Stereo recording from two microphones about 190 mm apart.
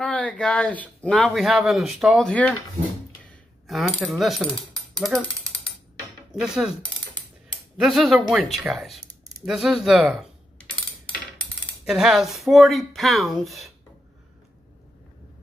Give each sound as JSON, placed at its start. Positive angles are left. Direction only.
{"t": 0.0, "sound": "speech", "side_deg": 5}
{"t": 3.3, "sound": "coin", "side_deg": 0}
{"t": 4.2, "sound": "speech", "side_deg": 0}
{"t": 6.4, "sound": "speech", "side_deg": -5}
{"t": 7.8, "sound": "speech", "side_deg": 0}
{"t": 11.8, "sound": "speech", "side_deg": 0}